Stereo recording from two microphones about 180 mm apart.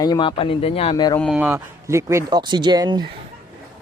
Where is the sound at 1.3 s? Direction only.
10° right (ahead or behind).